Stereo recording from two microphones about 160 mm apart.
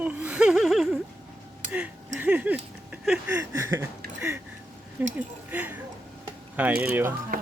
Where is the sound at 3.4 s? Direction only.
20° right (ahead or behind).